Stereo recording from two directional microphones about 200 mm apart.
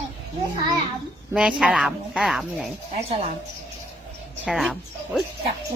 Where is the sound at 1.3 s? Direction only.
5° right (ahead or behind).